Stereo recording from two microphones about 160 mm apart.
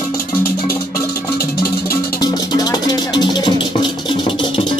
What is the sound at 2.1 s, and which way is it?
Music, 25° left (ahead or behind).